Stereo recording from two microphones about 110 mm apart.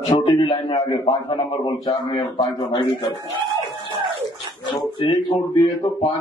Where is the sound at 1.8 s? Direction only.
35° left (ahead or behind).